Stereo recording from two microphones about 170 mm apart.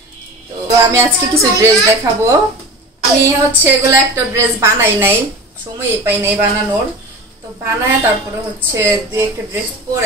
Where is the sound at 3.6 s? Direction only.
15° right (ahead or behind).